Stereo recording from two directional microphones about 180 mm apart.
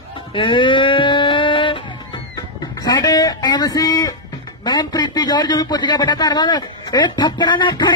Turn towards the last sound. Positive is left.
turn(degrees=25)  # may be behind; listen again after turning